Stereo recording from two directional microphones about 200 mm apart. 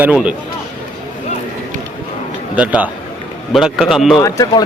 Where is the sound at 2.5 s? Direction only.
5° right (ahead or behind).